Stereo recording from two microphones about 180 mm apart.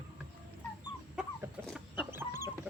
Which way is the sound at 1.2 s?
5° right (ahead or behind).